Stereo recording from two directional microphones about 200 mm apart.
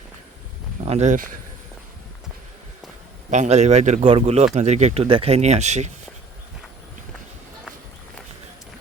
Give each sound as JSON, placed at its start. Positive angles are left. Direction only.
{"t": 0.9, "sound": "speech", "side_deg": -35}
{"t": 3.2, "sound": "speech", "side_deg": -35}